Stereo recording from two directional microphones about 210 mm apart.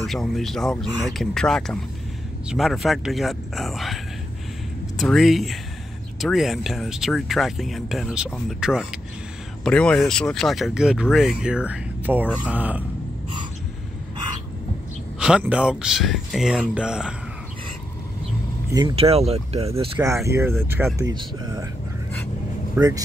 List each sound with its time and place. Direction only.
0.0 s speech: centre (ahead or behind)
15.1 s speech: 5° right (ahead or behind)
18.7 s speech: 20° right (ahead or behind)
20.2 s speech: 10° right (ahead or behind)
21.1 s speech: 20° right (ahead or behind)
22.8 s speech: 15° right (ahead or behind)